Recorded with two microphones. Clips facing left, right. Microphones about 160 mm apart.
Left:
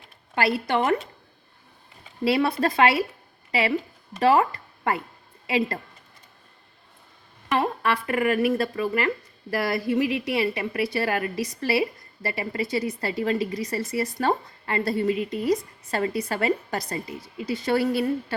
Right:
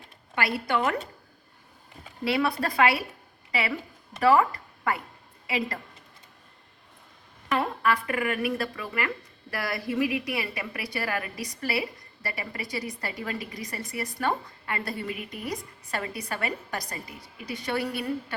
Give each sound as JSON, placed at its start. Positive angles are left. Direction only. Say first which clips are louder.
{"t": 0.3, "sound": "speech", "louder": "left 4 dB", "side_deg": 30}
{"t": 2.2, "sound": "speech", "louder": "left 4 dB", "side_deg": 25}
{"t": 4.2, "sound": "speech", "louder": "left 1 dB", "side_deg": 30}
{"t": 7.5, "sound": "speech", "louder": "left 2 dB", "side_deg": 25}